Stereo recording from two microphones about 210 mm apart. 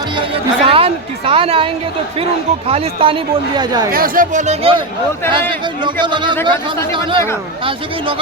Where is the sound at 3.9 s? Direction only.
40° right (ahead or behind).